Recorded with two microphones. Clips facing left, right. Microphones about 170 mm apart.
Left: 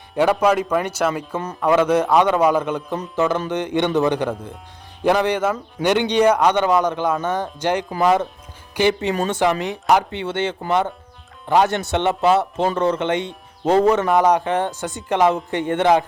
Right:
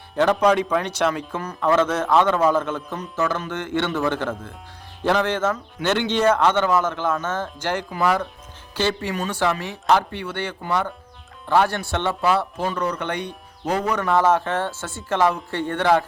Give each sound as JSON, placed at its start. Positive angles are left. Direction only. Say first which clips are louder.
{"t": 0.2, "sound": "a man's voice", "louder": "left 1 dB", "side_deg": 10}
{"t": 1.4, "sound": "a man's voice", "louder": "left 2 dB", "side_deg": 20}
{"t": 14.1, "sound": "a man's voice", "louder": "left 2 dB", "side_deg": 15}